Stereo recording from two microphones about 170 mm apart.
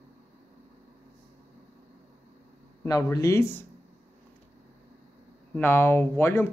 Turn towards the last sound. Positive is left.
turn(degrees=15)  # may be behind; listen again after turning